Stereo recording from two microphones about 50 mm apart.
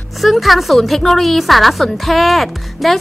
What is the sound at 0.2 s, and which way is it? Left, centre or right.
Speech, centre.